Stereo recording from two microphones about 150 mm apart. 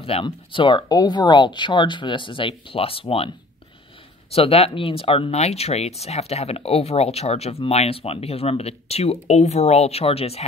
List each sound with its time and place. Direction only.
0.0 s speech: 35° left (ahead or behind)
4.3 s speech: 40° left (ahead or behind)